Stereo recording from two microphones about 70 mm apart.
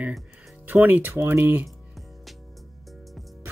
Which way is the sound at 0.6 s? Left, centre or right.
Right.